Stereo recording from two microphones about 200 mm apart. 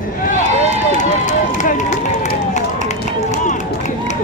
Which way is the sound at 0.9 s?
40° left (ahead or behind).